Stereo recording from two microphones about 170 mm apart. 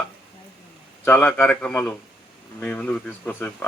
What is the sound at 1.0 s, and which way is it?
Speech, 10° left (ahead or behind).